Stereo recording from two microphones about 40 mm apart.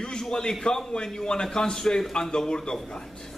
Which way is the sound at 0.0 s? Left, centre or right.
Centre.